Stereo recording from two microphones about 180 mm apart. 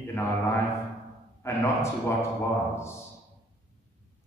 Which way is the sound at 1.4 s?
15° left (ahead or behind).